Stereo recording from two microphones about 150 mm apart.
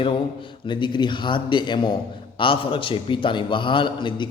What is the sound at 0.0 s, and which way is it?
A man's voice, 35° left (ahead or behind).